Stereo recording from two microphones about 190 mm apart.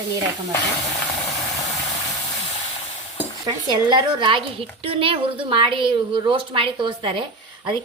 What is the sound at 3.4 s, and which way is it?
A woman's voice, 20° right (ahead or behind).